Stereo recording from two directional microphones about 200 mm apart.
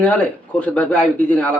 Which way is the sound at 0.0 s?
5° left (ahead or behind).